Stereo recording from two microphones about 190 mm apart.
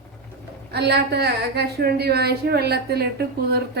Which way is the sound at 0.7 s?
60° right (ahead or behind).